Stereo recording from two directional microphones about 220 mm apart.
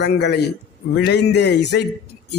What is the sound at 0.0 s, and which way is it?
A man's voice, 50° left (ahead or behind).